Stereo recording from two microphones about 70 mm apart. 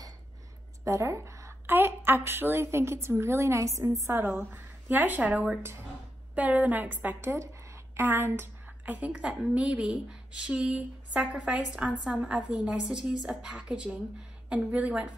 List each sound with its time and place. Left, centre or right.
0.8 s speech: right
1.7 s a woman's voice: right
4.0 s a woman's voice: right
7.2 s a sound: right
8.0 s a woman's voice: right